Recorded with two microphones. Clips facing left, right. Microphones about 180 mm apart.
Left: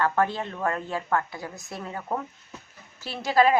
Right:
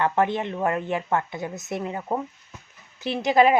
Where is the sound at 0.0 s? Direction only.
20° right (ahead or behind).